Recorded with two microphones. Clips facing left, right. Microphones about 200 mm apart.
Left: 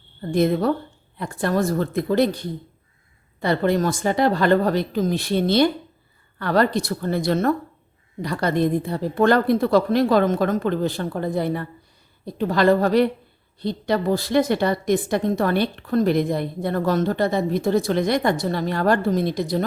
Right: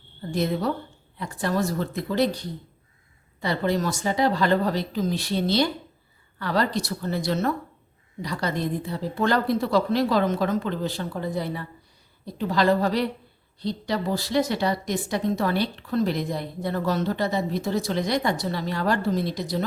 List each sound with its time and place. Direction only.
0.3 s a woman's voice: 55° left (ahead or behind)